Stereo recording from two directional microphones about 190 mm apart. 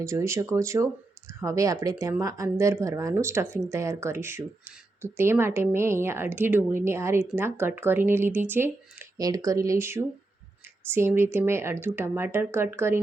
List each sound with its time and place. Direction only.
0.0 s speech: 15° right (ahead or behind)